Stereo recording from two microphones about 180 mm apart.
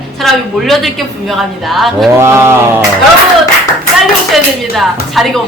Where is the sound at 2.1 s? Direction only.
15° right (ahead or behind).